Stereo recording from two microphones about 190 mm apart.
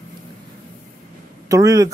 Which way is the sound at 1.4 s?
15° right (ahead or behind).